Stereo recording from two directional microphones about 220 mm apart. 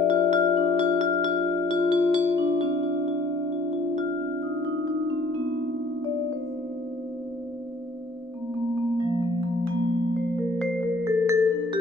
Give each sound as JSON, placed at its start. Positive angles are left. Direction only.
{"t": 0.0, "sound": "music", "side_deg": -30}
{"t": 4.6, "sound": "music", "side_deg": -60}
{"t": 11.1, "sound": "music", "side_deg": -10}